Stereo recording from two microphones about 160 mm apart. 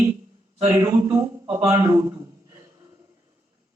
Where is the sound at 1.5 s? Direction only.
15° right (ahead or behind).